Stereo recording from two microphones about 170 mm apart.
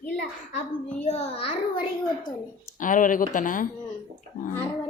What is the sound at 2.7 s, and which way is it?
Speech, 50° left (ahead or behind).